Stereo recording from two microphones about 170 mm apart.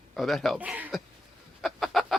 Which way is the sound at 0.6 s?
10° right (ahead or behind).